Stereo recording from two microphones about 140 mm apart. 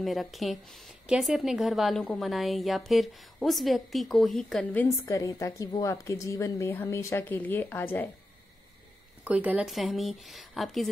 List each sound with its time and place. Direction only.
0.0 s speech: centre (ahead or behind)
4.8 s a woman's voice: 20° left (ahead or behind)
9.2 s speech: 10° right (ahead or behind)